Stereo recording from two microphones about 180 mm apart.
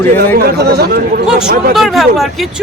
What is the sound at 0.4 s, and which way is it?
Speech, 60° right (ahead or behind).